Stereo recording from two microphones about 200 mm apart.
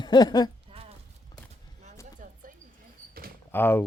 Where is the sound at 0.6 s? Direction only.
30° right (ahead or behind).